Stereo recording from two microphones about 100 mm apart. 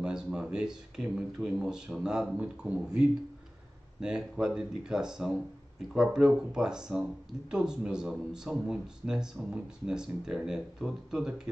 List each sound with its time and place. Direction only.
0.0 s speech: 5° right (ahead or behind)